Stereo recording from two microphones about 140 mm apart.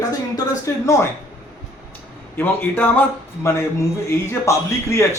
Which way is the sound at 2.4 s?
15° left (ahead or behind).